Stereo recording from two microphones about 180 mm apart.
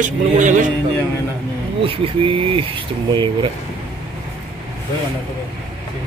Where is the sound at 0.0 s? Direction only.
45° right (ahead or behind).